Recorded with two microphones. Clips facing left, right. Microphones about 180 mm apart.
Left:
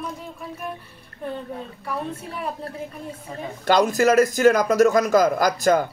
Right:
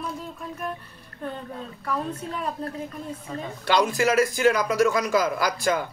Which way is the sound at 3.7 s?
45° left (ahead or behind).